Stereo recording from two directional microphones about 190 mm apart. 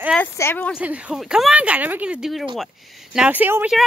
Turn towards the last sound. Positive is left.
turn(degrees=-10)  # may be behind; listen again after turning